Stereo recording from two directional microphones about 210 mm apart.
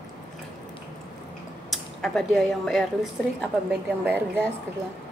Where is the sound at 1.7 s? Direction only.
Centre (ahead or behind).